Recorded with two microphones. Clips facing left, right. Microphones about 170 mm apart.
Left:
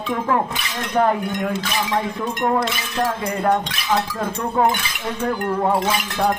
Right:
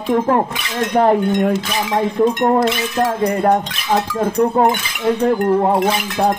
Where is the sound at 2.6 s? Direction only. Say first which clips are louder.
Right 6 dB; 45° right (ahead or behind).